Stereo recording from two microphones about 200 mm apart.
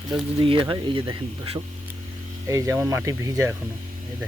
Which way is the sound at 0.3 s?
25° right (ahead or behind).